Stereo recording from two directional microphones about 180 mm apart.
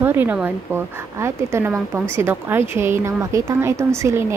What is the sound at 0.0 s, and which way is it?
A woman's voice, 10° right (ahead or behind).